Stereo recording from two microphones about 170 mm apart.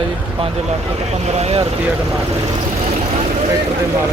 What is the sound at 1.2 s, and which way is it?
Speech, 40° right (ahead or behind).